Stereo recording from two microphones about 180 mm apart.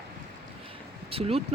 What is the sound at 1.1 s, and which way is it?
Speech, 30° right (ahead or behind).